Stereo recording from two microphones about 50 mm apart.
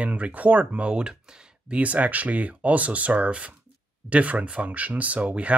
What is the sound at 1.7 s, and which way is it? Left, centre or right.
Speech, right.